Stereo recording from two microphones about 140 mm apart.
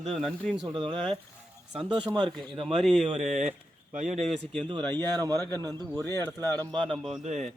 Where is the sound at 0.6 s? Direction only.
35° right (ahead or behind).